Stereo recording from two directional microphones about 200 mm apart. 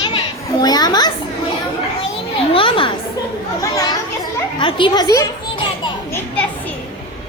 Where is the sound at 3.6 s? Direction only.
15° left (ahead or behind).